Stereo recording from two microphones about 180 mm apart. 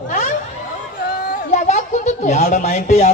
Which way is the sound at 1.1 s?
55° left (ahead or behind).